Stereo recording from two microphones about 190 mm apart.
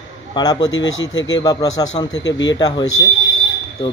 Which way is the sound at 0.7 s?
90° left.